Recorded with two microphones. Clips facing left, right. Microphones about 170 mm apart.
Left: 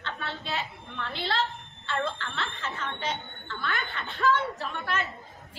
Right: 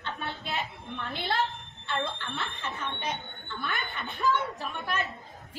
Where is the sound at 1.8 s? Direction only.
15° right (ahead or behind).